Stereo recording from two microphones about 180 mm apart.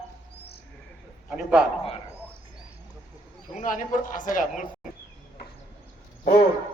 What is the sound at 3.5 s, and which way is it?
Speech, 45° left (ahead or behind).